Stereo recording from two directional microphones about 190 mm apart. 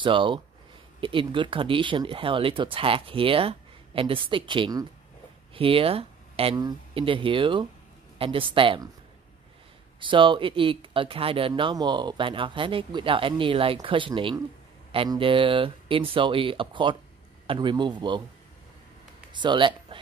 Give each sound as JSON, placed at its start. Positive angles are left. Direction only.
{"t": 0.0, "sound": "speech", "side_deg": -25}
{"t": 9.9, "sound": "speech", "side_deg": -25}
{"t": 19.3, "sound": "speech", "side_deg": -25}